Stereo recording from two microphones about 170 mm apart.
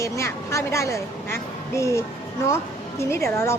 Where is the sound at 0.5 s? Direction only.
15° left (ahead or behind).